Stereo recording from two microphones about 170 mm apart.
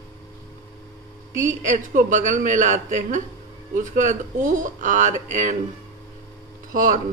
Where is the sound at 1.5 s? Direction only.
45° right (ahead or behind).